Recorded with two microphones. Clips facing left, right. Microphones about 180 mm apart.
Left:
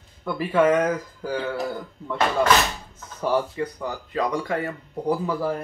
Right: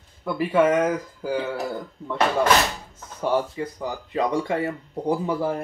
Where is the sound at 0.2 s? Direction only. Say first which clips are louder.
Right 1 dB; 5° right (ahead or behind).